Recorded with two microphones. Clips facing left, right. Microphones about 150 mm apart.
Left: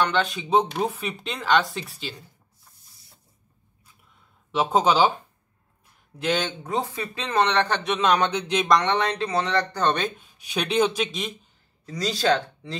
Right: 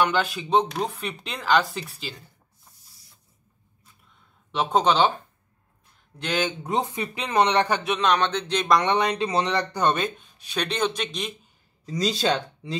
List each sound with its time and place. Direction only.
0.0 s speech: 5° right (ahead or behind)
4.5 s speech: 5° left (ahead or behind)
6.6 s a man's voice: 20° right (ahead or behind); by 8.6 s 10° left (ahead or behind)
8.6 s a man's voice: 10° right (ahead or behind)
9.9 s speech: centre (ahead or behind)
11.8 s speech: 20° right (ahead or behind)